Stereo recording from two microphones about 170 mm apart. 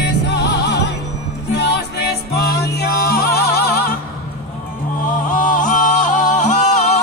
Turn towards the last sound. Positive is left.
turn(degrees=40)  # may be behind; listen again after turning